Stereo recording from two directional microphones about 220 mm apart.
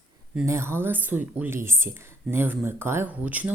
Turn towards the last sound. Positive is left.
turn(degrees=-5)  # may be behind; listen again after turning